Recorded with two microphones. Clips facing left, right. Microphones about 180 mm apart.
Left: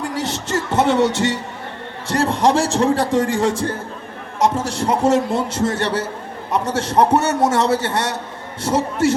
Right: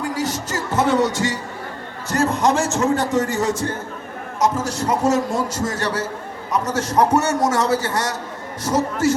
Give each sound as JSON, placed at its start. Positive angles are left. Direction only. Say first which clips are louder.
{"t": 0.2, "sound": "music", "louder": "left 2 dB", "side_deg": 25}
{"t": 2.0, "sound": "a man's voice", "louder": "left 2 dB", "side_deg": 30}